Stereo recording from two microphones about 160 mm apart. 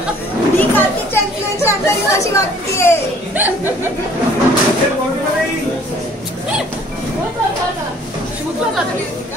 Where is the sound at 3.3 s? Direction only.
10° right (ahead or behind).